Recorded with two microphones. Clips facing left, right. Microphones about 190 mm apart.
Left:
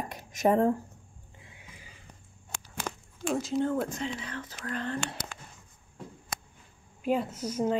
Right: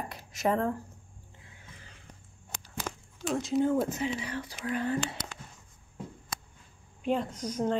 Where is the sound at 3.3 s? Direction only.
Centre (ahead or behind).